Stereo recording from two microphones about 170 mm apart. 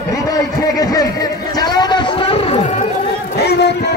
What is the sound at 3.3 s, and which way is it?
Music, 70° left (ahead or behind).